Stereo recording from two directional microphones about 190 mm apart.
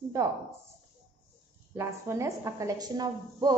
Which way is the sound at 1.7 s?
15° right (ahead or behind).